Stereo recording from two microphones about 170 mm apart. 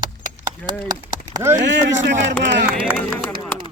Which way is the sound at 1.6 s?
90° right.